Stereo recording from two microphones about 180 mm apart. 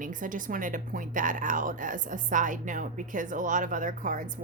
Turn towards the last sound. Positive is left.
turn(degrees=-45)  # may be behind; listen again after turning